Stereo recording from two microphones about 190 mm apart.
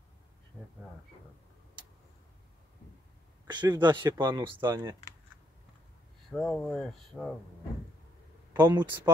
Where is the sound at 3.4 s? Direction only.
25° right (ahead or behind).